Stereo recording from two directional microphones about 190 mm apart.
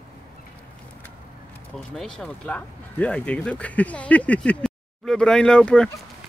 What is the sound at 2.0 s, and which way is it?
Speech, 5° left (ahead or behind).